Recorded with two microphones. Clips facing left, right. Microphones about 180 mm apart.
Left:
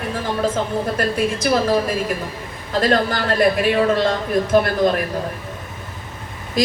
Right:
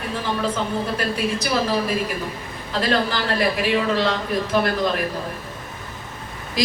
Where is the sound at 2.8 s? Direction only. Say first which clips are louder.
Left 3 dB; 50° left (ahead or behind).